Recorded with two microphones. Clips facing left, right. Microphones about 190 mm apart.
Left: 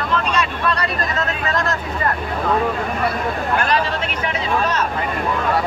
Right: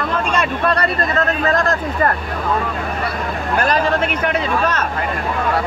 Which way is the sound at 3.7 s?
55° right (ahead or behind).